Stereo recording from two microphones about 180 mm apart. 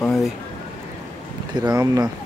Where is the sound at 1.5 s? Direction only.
20° right (ahead or behind).